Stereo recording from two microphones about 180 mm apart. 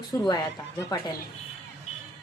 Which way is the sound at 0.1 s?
15° left (ahead or behind).